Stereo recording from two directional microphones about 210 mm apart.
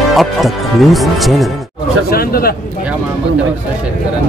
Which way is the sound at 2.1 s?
45° left (ahead or behind).